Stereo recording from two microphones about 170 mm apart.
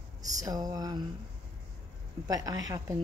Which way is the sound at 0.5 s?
20° right (ahead or behind).